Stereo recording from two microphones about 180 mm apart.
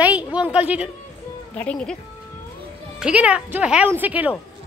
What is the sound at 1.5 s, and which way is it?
Speech, 5° left (ahead or behind).